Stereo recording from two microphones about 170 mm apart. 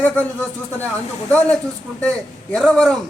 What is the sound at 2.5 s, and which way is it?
Speech, 5° left (ahead or behind).